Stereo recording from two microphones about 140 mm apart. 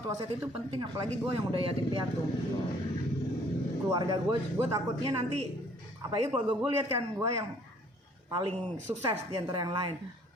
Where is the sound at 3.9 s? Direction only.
25° right (ahead or behind).